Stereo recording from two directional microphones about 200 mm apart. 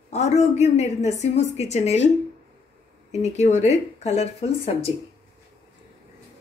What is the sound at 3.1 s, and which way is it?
Speech, 35° left (ahead or behind).